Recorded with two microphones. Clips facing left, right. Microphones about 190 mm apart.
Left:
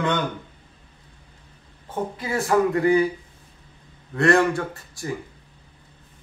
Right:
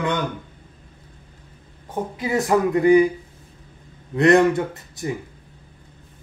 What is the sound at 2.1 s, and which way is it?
Speech, 20° right (ahead or behind).